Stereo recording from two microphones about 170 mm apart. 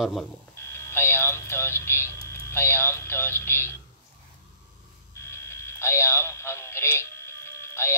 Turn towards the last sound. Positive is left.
turn(degrees=15)  # may be behind; listen again after turning